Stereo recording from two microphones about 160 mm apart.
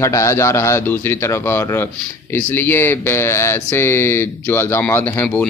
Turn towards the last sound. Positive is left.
turn(degrees=15)  # may be behind; listen again after turning